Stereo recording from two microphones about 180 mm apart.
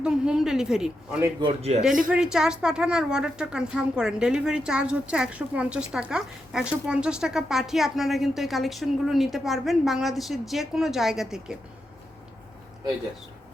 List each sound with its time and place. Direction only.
0.0 s a woman's voice: 5° right (ahead or behind)
1.4 s a man's voice: 30° right (ahead or behind)
2.0 s a woman's voice: 5° right (ahead or behind)